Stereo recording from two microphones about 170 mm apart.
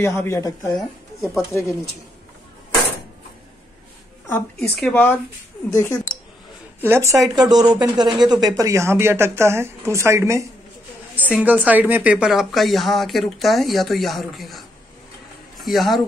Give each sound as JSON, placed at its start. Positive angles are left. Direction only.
{"t": 0.0, "sound": "speech", "side_deg": 15}
{"t": 0.7, "sound": "speech", "side_deg": 0}
{"t": 4.3, "sound": "speech", "side_deg": 5}
{"t": 6.9, "sound": "a woman's voice", "side_deg": -15}
{"t": 15.6, "sound": "a woman's voice", "side_deg": 0}